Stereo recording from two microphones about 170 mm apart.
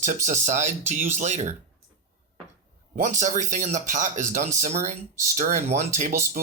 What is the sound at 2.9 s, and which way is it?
Speech, 45° right (ahead or behind).